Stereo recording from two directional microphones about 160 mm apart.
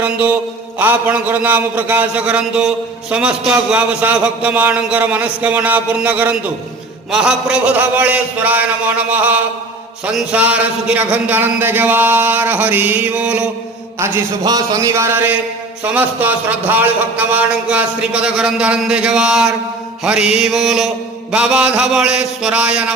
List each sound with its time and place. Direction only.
0.0 s a man's voice: 10° right (ahead or behind)
14.0 s a man's voice: 25° right (ahead or behind); by 19.5 s 5° right (ahead or behind)
20.1 s mantra: 5° right (ahead or behind)
21.3 s a man's voice: 5° right (ahead or behind)